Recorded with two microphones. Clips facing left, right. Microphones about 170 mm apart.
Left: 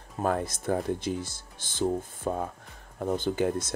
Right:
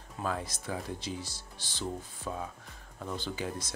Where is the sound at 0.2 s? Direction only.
50° left (ahead or behind).